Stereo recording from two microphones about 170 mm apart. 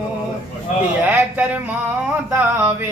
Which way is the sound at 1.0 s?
10° right (ahead or behind).